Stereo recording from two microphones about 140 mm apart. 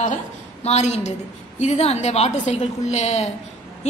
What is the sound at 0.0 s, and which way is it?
A woman's voice, 55° left (ahead or behind).